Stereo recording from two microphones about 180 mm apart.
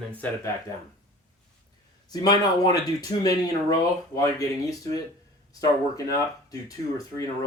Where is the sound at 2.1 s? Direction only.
20° left (ahead or behind).